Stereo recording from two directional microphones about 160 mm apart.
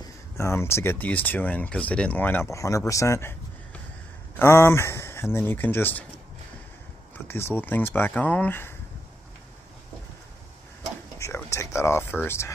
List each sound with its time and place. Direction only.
0.0 s speech: 15° left (ahead or behind)
7.2 s speech: 15° left (ahead or behind)
11.1 s a sound: 15° left (ahead or behind)
12.3 s speech: 15° left (ahead or behind)